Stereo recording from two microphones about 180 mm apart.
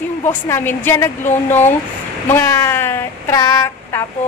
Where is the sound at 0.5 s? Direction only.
15° left (ahead or behind).